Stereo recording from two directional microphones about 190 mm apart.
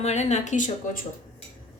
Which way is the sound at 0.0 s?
35° left (ahead or behind).